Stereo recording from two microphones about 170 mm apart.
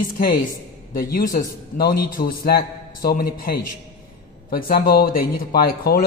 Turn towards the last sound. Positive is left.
turn(degrees=60)  # may be behind; listen again after turning